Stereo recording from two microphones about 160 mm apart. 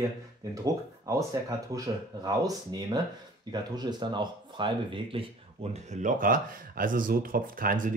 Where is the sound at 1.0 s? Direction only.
20° right (ahead or behind).